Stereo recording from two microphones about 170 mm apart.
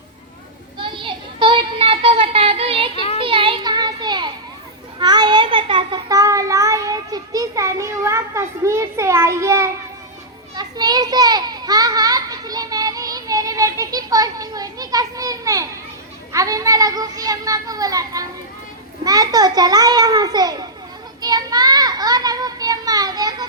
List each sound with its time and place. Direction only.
0.8 s a sound: 30° right (ahead or behind)
2.9 s child singing: 35° left (ahead or behind)
3.2 s a sound: 30° right (ahead or behind); by 9.7 s 15° right (ahead or behind)
10.5 s children playing: 25° right (ahead or behind)
16.3 s a child's voice: 20° right (ahead or behind)
21.2 s children playing: 25° right (ahead or behind)